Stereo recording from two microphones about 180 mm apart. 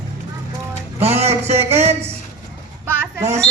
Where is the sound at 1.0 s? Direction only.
35° right (ahead or behind).